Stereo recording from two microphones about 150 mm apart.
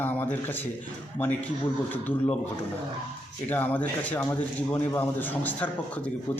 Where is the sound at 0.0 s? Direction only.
15° left (ahead or behind).